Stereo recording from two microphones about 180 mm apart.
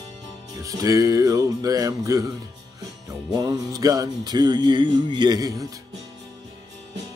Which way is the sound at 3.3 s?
20° right (ahead or behind).